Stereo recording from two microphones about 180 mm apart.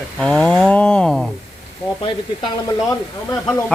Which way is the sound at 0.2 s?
5° left (ahead or behind).